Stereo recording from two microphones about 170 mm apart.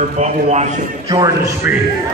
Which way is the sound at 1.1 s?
25° right (ahead or behind).